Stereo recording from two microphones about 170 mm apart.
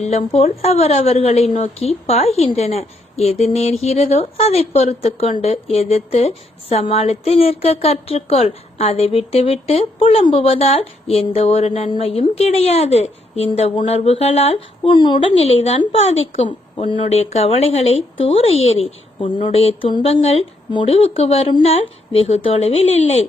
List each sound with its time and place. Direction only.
0.0 s a woman's voice: 40° left (ahead or behind)